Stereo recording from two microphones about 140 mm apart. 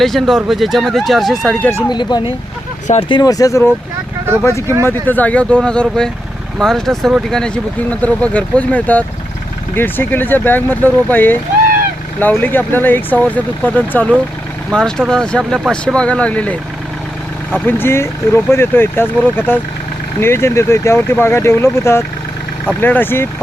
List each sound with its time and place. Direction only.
0.0 s speech: centre (ahead or behind)
1.9 s speech: 30° left (ahead or behind); by 23.3 s 15° left (ahead or behind)